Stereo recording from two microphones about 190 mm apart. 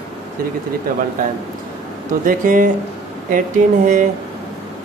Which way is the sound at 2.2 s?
45° right (ahead or behind).